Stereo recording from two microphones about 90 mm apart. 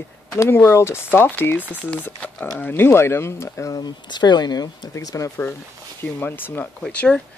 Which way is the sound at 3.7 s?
50° left (ahead or behind).